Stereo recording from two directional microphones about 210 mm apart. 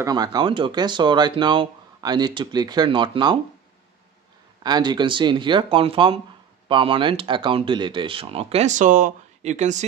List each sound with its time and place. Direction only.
0.0 s speech: 20° right (ahead or behind)
4.6 s speech: 20° right (ahead or behind)